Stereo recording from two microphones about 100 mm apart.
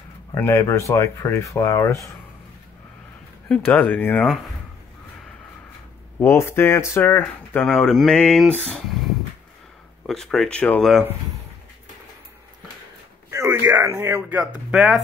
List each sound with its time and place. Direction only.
0.3 s speech: 25° left (ahead or behind)
3.4 s speech: 15° left (ahead or behind)
6.1 s speech: 25° left (ahead or behind)
7.6 s speech: 5° left (ahead or behind)
10.0 s speech: 5° left (ahead or behind)
13.3 s a sound: 30° right (ahead or behind)
13.9 s speech: 20° right (ahead or behind)
14.5 s speech: 5° right (ahead or behind)